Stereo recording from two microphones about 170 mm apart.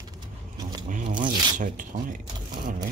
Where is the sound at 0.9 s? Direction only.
45° right (ahead or behind).